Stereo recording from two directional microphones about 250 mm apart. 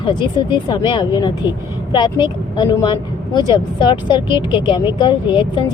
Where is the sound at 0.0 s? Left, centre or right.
Centre.